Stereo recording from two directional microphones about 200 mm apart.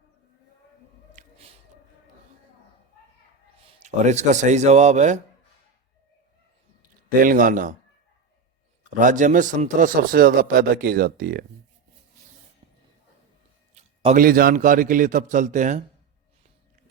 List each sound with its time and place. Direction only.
1.1 s squish: 30° right (ahead or behind)
3.6 s a man's voice: 35° right (ahead or behind)
7.2 s a man's voice: 45° right (ahead or behind)
9.0 s a man's voice: 40° right (ahead or behind)
13.7 s a man's voice: 35° right (ahead or behind)